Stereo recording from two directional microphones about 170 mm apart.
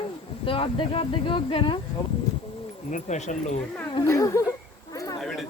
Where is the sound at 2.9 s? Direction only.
45° left (ahead or behind).